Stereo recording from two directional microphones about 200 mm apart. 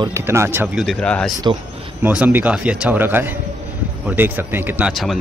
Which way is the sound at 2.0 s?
10° right (ahead or behind).